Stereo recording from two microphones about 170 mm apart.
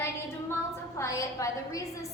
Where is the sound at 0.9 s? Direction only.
20° left (ahead or behind).